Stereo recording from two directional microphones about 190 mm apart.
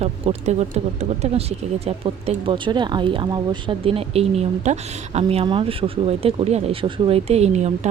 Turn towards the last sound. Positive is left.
turn(degrees=-35)  # may be behind; listen again after turning